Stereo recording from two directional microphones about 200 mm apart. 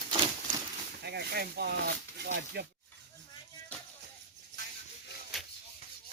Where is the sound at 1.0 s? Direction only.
55° right (ahead or behind).